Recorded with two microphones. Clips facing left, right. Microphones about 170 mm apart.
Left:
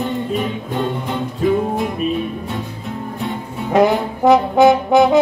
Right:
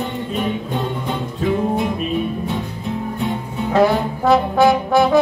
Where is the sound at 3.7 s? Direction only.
20° left (ahead or behind).